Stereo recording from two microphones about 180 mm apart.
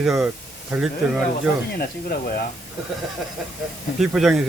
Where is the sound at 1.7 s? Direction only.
60° left (ahead or behind).